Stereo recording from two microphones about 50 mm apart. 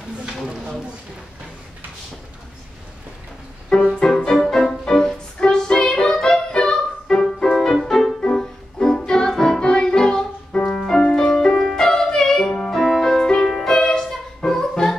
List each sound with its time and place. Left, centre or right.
4.0 s music: centre